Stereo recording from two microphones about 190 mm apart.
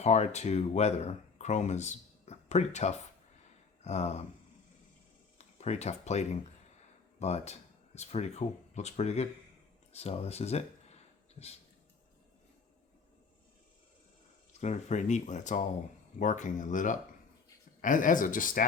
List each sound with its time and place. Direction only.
0.0 s speech: 35° left (ahead or behind)
5.4 s speech: 35° left (ahead or behind)
9.9 s a sound: 35° left (ahead or behind)
14.6 s speech: 40° left (ahead or behind)